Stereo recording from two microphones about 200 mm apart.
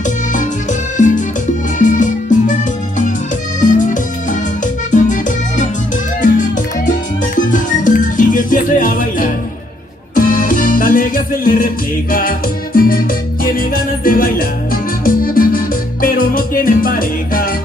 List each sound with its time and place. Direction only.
0.0 s music: 40° left (ahead or behind)
7.3 s music: 40° left (ahead or behind)